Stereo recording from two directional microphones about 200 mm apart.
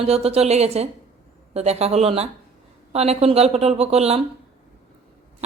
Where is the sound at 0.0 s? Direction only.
30° right (ahead or behind).